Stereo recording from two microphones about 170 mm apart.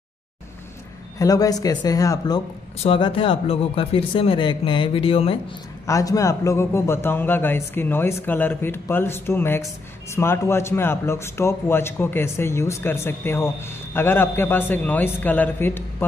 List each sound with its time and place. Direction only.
1.1 s speech: 20° left (ahead or behind)
2.8 s speech: 30° left (ahead or behind)
5.9 s a man's voice: 20° left (ahead or behind)